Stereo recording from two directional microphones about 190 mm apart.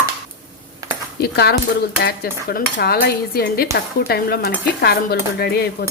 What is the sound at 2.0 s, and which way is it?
Speech, 55° left (ahead or behind).